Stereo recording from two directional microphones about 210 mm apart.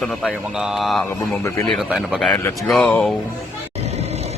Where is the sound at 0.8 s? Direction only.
Centre (ahead or behind).